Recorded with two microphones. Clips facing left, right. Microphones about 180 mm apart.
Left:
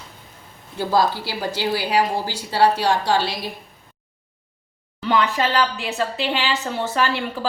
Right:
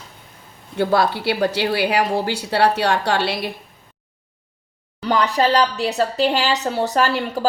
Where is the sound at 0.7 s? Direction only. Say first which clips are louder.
Right 2 dB; 65° right (ahead or behind).